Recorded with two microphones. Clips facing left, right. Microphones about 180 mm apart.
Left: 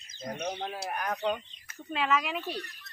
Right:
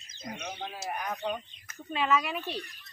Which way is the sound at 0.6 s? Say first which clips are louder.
Left 2 dB; 55° left (ahead or behind).